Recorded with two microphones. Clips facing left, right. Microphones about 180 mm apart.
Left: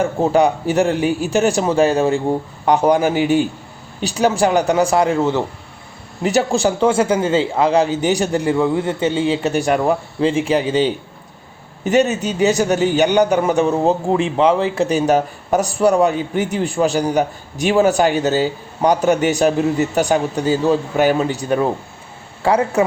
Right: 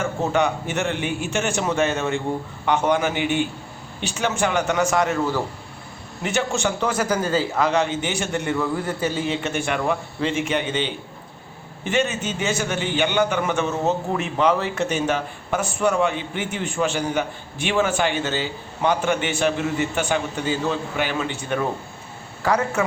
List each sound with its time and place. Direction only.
0.0 s a man's voice: 35° left (ahead or behind)
6.2 s a man's voice: 35° left (ahead or behind)